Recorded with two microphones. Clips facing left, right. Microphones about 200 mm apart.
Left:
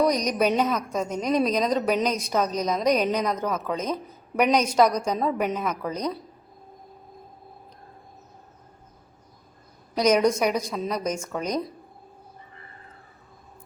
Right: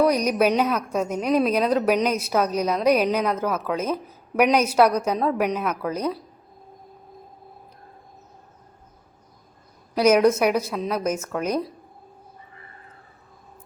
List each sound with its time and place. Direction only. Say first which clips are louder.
0.0 s a woman's voice: right 3 dB; 5° right (ahead or behind)
9.9 s a woman's voice: right 3 dB; 5° right (ahead or behind)